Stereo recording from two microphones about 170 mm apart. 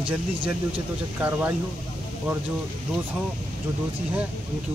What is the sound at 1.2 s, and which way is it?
Speech, 15° right (ahead or behind).